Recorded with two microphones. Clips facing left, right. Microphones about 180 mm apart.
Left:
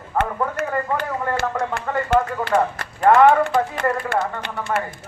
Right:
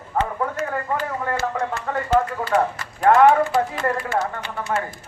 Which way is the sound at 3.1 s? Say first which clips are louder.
Left 1 dB; centre (ahead or behind).